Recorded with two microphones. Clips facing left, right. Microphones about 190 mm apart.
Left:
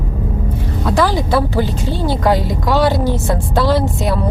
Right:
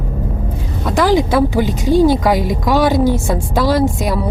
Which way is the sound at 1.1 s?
15° right (ahead or behind).